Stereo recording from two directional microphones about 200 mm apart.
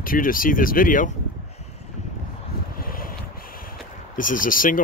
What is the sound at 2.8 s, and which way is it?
Vehicle, 45° left (ahead or behind).